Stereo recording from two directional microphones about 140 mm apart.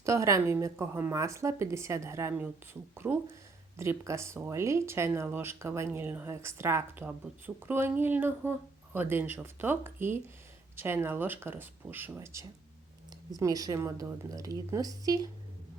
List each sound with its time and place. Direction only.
0.0 s speech: 20° right (ahead or behind)